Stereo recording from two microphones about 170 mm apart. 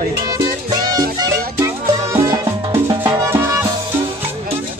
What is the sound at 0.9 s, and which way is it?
Music, 20° right (ahead or behind).